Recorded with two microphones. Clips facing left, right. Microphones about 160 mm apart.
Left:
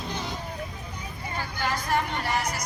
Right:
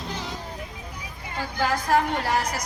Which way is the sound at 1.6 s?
80° right.